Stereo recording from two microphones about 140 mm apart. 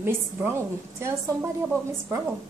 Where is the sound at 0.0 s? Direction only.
15° right (ahead or behind).